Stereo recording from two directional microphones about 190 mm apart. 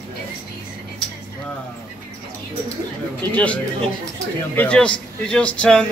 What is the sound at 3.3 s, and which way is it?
A man's voice, 5° left (ahead or behind).